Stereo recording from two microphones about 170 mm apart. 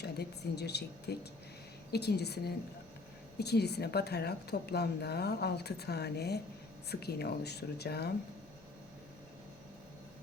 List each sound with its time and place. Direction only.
0.0 s speech: 75° left (ahead or behind)